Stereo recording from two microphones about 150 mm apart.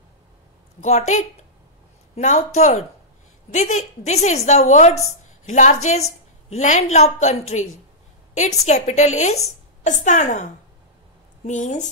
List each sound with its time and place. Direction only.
0.7 s a woman's voice: 50° left (ahead or behind)